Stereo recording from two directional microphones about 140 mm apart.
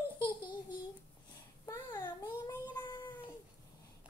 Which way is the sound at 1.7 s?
25° left (ahead or behind).